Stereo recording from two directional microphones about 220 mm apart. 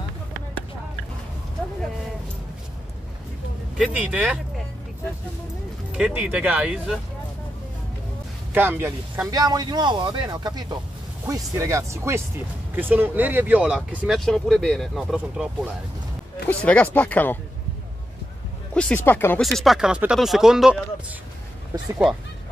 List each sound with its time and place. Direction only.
3.7 s speech: 5° right (ahead or behind)
5.9 s speech: 5° right (ahead or behind)
8.5 s speech: 10° right (ahead or behind); by 17.4 s 10° left (ahead or behind)
18.7 s speech: 5° left (ahead or behind)